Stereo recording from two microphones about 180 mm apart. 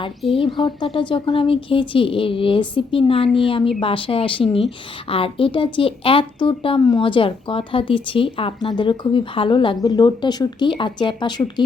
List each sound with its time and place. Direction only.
0.3 s speech: 30° left (ahead or behind)